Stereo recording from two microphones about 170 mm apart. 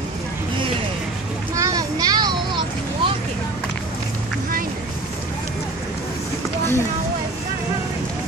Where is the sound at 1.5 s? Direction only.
20° right (ahead or behind).